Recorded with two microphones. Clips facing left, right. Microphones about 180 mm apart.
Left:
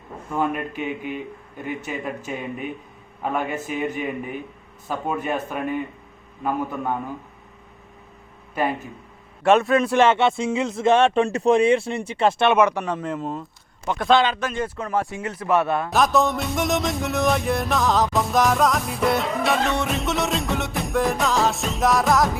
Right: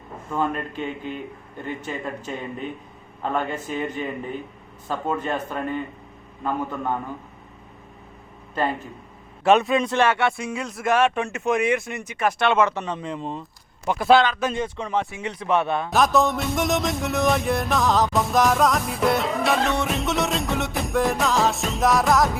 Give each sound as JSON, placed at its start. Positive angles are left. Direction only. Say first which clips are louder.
{"t": 0.3, "sound": "speech", "louder": "left 1 dB", "side_deg": 10}
{"t": 8.5, "sound": "speech", "louder": "left 1 dB", "side_deg": 10}
{"t": 9.9, "sound": "speech", "louder": "left 3 dB", "side_deg": 20}
{"t": 13.8, "sound": "speech", "louder": "right 1 dB", "side_deg": -5}
{"t": 14.6, "sound": "speech", "louder": "left 1 dB", "side_deg": 5}